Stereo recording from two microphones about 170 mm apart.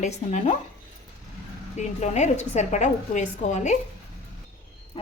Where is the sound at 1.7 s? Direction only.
45° left (ahead or behind).